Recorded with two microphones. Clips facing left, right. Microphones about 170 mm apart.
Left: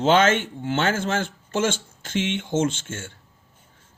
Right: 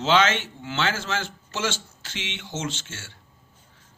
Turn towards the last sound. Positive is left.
turn(degrees=50)  # may be behind; listen again after turning